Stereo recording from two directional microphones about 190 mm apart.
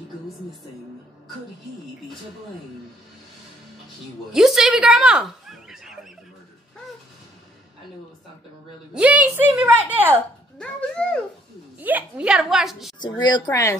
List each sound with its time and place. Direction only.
4.3 s speech: 5° right (ahead or behind)
8.9 s a woman's voice: 5° right (ahead or behind)
10.6 s speech: 5° left (ahead or behind)
11.8 s speech: 5° right (ahead or behind)
13.0 s speech: 20° left (ahead or behind)